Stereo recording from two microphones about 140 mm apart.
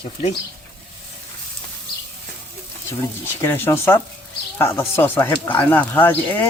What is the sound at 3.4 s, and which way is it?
Speech, 20° left (ahead or behind).